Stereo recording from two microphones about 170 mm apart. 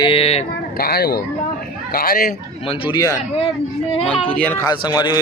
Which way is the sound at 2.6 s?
30° left (ahead or behind).